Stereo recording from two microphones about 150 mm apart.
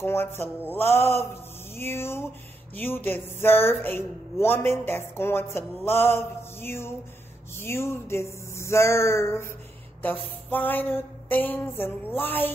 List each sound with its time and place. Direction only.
0.0 s speech: 15° left (ahead or behind)